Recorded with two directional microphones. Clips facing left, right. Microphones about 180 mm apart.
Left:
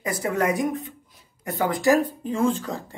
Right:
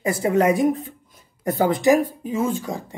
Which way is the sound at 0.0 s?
25° right (ahead or behind).